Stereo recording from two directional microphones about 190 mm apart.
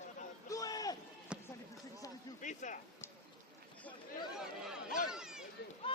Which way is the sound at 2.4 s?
40° left (ahead or behind).